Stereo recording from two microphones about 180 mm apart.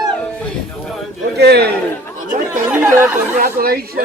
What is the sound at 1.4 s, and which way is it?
Speech, 65° right (ahead or behind).